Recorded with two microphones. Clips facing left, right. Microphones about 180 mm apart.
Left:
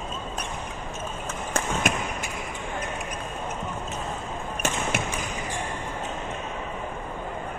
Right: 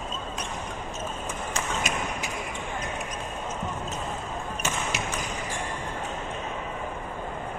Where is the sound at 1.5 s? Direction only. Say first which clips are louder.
Left 5 dB; 55° left (ahead or behind).